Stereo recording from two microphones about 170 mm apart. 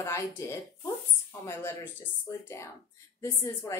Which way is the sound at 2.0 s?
15° left (ahead or behind).